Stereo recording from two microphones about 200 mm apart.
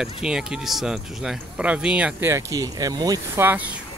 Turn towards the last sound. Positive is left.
turn(degrees=-10)  # may be behind; listen again after turning